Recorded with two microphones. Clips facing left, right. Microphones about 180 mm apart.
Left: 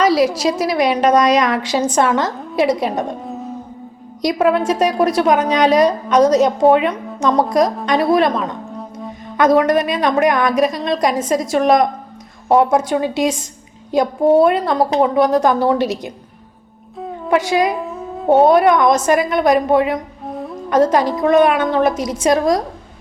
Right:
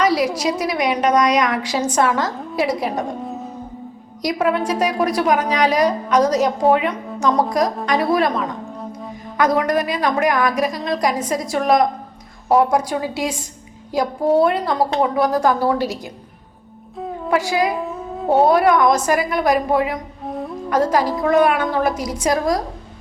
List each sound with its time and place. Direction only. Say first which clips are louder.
0.0 s a sound: left 4 dB; 25° left (ahead or behind)
0.6 s a woman's voice: left 5 dB; 25° left (ahead or behind)
4.2 s a woman's voice: left 4 dB; 25° left (ahead or behind)
17.3 s a woman's voice: left 3 dB; 20° left (ahead or behind)
17.7 s a sound: even; centre (ahead or behind)
18.4 s a woman's voice: left 1 dB; 20° left (ahead or behind)
20.2 s music: even; centre (ahead or behind)
20.7 s a woman's voice: left 4 dB; 20° left (ahead or behind)